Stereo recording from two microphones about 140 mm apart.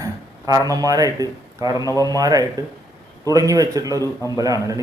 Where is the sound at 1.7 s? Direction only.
25° left (ahead or behind).